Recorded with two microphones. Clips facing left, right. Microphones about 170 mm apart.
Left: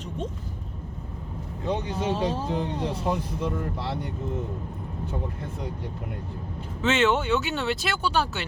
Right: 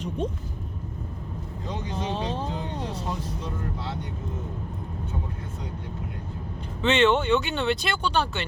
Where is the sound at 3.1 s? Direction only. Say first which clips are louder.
Left 5 dB; 65° left (ahead or behind).